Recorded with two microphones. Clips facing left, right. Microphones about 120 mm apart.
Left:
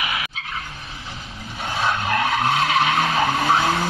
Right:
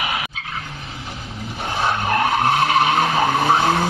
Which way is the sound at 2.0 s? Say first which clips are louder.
Right 4 dB; 35° right (ahead or behind).